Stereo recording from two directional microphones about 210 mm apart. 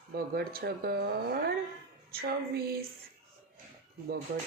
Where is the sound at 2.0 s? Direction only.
45° right (ahead or behind).